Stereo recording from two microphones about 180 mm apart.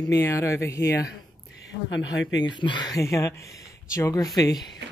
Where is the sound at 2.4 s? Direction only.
25° left (ahead or behind).